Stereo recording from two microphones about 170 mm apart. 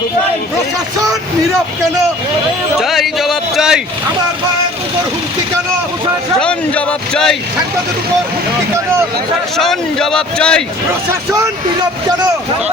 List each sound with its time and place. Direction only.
2.7 s a sound: centre (ahead or behind)
6.4 s speech: 5° left (ahead or behind)
9.6 s a man's voice: centre (ahead or behind)